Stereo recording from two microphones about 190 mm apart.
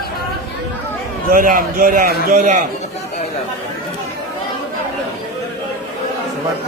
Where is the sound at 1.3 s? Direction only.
45° right (ahead or behind).